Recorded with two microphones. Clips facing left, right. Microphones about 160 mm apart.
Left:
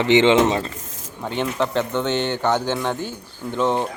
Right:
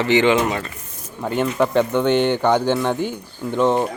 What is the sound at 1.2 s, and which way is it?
Speech, 5° right (ahead or behind).